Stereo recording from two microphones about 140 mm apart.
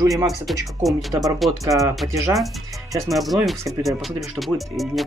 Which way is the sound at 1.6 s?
25° right (ahead or behind).